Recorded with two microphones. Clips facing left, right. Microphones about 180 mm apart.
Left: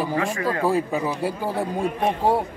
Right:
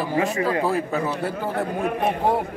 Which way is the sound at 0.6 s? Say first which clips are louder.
Left 1 dB; 15° left (ahead or behind).